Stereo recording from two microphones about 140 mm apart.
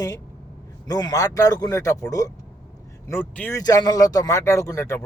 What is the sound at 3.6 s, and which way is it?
Speech, 25° left (ahead or behind).